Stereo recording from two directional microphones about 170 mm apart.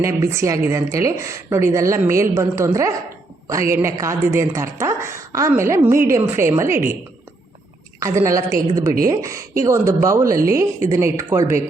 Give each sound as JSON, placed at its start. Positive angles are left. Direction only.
{"t": 0.0, "sound": "speech", "side_deg": -15}
{"t": 7.9, "sound": "a woman's voice", "side_deg": -20}